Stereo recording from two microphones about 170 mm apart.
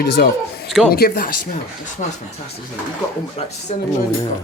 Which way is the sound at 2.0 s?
45° left (ahead or behind).